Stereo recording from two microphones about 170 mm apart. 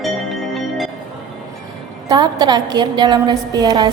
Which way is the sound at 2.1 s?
25° right (ahead or behind).